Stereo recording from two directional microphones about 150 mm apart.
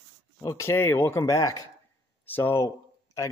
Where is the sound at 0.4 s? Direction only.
20° left (ahead or behind).